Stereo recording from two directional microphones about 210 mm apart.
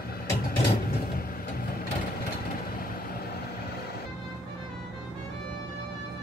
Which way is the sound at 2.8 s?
45° left (ahead or behind).